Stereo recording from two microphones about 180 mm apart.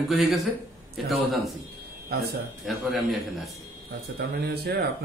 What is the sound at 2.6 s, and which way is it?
Speech, centre (ahead or behind).